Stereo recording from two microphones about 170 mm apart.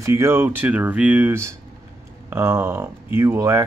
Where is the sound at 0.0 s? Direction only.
15° right (ahead or behind).